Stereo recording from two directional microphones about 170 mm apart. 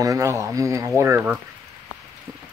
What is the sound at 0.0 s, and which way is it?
Speech, 20° right (ahead or behind).